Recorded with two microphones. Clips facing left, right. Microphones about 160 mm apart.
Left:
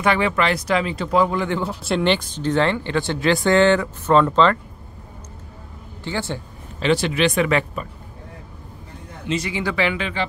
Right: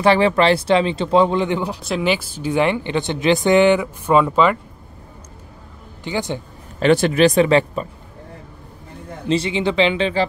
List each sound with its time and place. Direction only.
0.0 s speech: 30° right (ahead or behind)
1.8 s speech: centre (ahead or behind)
6.0 s speech: 15° right (ahead or behind)
6.8 s speech: 50° right (ahead or behind); by 7.8 s 30° right (ahead or behind)
9.3 s speech: 25° right (ahead or behind)